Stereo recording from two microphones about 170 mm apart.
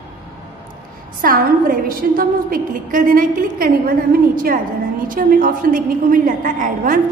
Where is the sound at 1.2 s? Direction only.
55° right (ahead or behind).